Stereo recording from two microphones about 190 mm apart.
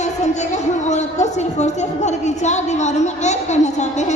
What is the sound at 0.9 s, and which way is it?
A woman's voice, 35° left (ahead or behind).